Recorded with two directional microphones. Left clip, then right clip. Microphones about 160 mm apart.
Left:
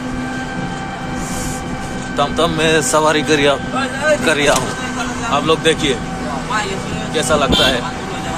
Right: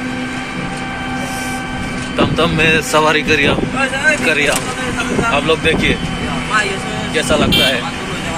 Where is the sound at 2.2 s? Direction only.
10° left (ahead or behind).